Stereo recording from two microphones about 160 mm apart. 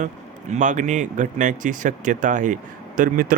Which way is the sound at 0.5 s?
50° right (ahead or behind).